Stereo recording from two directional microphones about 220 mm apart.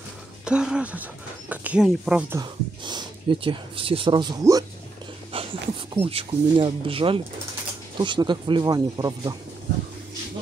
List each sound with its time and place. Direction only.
0.5 s speech: 5° right (ahead or behind)
2.4 s speech: 20° right (ahead or behind)